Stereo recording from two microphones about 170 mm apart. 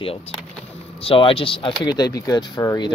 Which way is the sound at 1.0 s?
30° left (ahead or behind).